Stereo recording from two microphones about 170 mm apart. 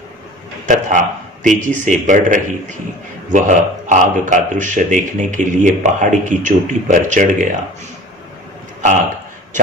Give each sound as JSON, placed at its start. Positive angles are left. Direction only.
{"t": 0.7, "sound": "speech", "side_deg": -50}